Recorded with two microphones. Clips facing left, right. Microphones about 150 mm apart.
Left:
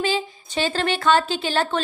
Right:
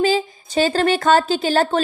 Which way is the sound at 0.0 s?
40° right (ahead or behind).